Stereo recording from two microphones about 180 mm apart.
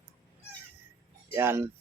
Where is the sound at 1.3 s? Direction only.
15° right (ahead or behind).